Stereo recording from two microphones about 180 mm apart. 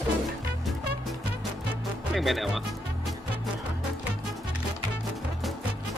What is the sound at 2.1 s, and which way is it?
Speech, centre (ahead or behind).